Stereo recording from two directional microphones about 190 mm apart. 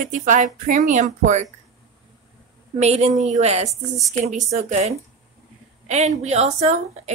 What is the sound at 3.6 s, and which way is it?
Speech, centre (ahead or behind).